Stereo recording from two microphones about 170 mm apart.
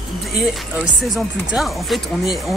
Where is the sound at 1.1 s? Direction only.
Centre (ahead or behind).